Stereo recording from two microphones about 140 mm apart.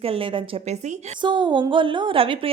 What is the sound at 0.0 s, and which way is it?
A woman's voice, 40° right (ahead or behind).